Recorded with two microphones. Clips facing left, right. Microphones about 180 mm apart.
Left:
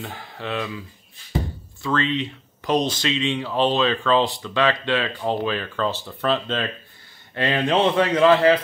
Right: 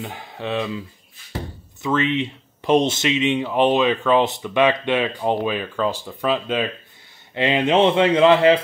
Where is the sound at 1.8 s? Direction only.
20° right (ahead or behind).